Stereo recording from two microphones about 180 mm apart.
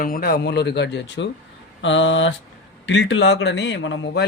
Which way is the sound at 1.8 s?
90° left.